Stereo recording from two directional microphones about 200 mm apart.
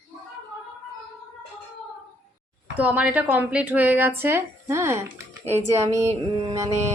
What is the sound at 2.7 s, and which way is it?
A woman's voice, 10° right (ahead or behind).